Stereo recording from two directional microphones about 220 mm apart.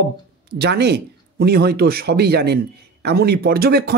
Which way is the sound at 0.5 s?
50° right (ahead or behind).